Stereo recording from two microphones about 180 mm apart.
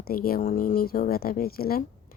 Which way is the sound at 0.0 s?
55° left (ahead or behind).